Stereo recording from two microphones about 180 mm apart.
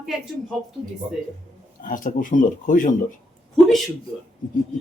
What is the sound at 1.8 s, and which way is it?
A man's voice, 50° left (ahead or behind).